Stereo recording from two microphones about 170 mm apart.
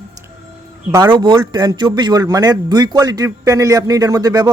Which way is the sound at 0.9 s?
25° right (ahead or behind).